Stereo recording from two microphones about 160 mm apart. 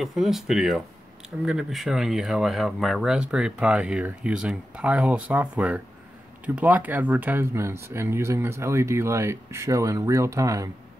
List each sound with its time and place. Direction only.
0.0 s speech: centre (ahead or behind); by 10.7 s 20° right (ahead or behind)